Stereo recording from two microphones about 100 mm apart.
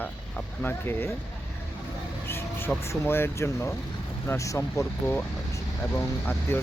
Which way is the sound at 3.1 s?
25° left (ahead or behind).